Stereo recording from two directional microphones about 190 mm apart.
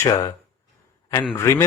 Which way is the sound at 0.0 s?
20° left (ahead or behind).